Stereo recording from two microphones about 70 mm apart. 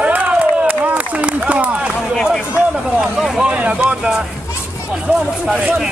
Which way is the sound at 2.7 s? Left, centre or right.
Centre.